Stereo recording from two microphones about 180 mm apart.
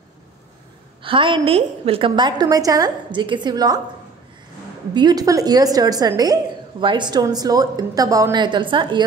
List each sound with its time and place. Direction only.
1.0 s a woman's voice: 30° right (ahead or behind)
4.9 s a woman's voice: 25° right (ahead or behind)